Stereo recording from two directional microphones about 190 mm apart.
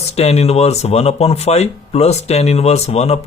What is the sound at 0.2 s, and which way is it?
Speech, 35° left (ahead or behind).